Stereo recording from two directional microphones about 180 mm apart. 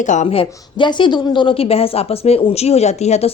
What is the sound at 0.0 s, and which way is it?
Speech, 40° left (ahead or behind).